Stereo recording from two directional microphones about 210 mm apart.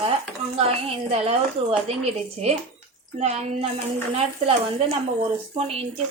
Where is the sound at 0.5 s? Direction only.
30° right (ahead or behind).